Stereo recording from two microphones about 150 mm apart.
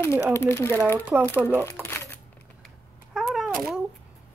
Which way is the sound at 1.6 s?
15° left (ahead or behind).